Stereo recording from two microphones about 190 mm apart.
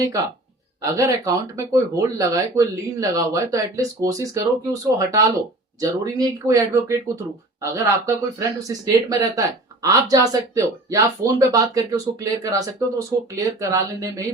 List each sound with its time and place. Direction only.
0.8 s speech: 15° right (ahead or behind)